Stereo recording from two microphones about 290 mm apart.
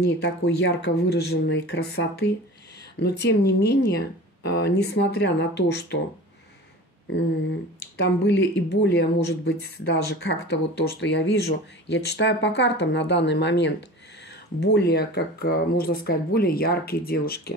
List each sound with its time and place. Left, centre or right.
0.2 s speech: left
8.0 s speech: left